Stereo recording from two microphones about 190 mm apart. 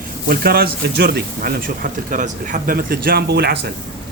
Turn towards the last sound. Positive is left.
turn(degrees=-60)  # may be behind; listen again after turning